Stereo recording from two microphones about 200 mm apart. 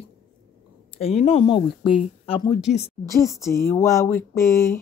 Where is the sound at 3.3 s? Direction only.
15° left (ahead or behind).